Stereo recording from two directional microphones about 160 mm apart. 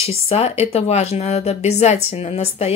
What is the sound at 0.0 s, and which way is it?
Speech, 40° left (ahead or behind).